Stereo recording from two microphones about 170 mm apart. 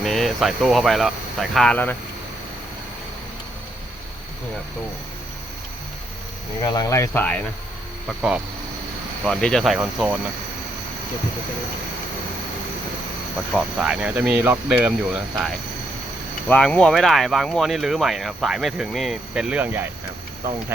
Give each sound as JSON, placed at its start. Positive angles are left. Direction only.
{"t": 0.0, "sound": "speech", "side_deg": 0}
{"t": 6.6, "sound": "speech", "side_deg": 20}
{"t": 9.2, "sound": "speech", "side_deg": 5}
{"t": 13.5, "sound": "speech", "side_deg": 0}
{"t": 16.5, "sound": "speech", "side_deg": 5}